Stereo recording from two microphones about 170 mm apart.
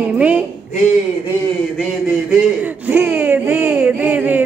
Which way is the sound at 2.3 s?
10° right (ahead or behind).